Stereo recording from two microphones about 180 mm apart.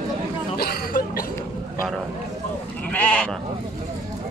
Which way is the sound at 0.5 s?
60° left (ahead or behind).